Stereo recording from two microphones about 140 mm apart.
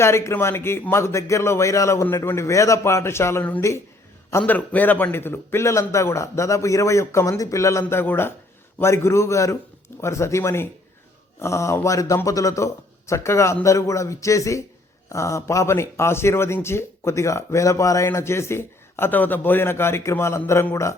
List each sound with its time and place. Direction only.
0.0 s speech: 20° left (ahead or behind)